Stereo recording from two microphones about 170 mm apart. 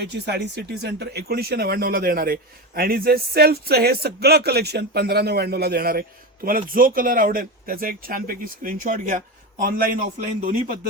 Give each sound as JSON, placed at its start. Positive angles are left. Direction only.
{"t": 0.0, "sound": "speech", "side_deg": -80}